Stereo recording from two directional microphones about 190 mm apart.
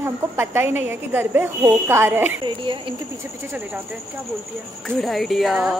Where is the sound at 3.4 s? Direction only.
5° right (ahead or behind).